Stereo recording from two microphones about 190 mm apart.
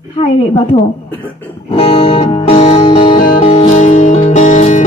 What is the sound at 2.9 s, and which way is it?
Music, 30° left (ahead or behind).